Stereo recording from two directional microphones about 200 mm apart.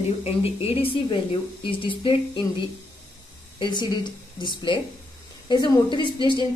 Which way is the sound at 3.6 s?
20° left (ahead or behind).